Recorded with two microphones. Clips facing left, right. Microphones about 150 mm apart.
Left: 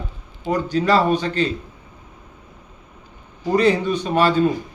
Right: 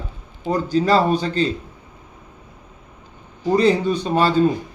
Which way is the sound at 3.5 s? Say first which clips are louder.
Even; 30° right (ahead or behind).